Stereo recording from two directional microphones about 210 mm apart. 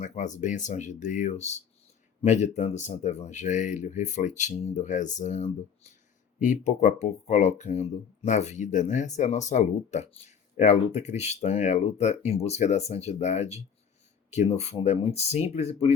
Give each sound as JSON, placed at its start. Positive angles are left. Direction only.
{"t": 0.0, "sound": "speech", "side_deg": 35}